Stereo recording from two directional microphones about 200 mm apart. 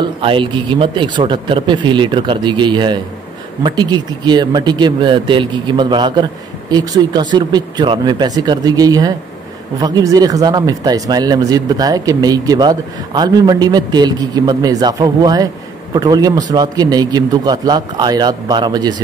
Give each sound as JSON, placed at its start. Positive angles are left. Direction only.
{"t": 0.0, "sound": "speech", "side_deg": -25}